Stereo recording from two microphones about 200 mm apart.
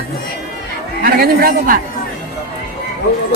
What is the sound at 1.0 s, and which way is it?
Speech, 50° right (ahead or behind).